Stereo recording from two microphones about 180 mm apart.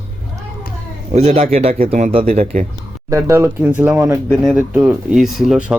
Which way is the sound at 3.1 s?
15° right (ahead or behind).